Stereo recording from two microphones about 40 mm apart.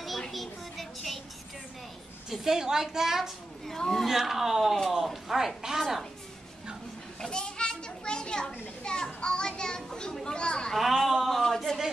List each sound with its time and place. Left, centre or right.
0.3 s a sound: centre
2.4 s a woman's voice: centre
3.6 s a woman's voice: centre
4.0 s speech: centre
7.2 s children playing: left
10.8 s a sound: centre